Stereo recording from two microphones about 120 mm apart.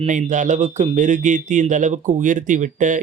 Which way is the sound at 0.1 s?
90° right.